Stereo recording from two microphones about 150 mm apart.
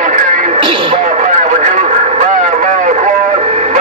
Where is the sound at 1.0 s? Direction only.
60° right (ahead or behind).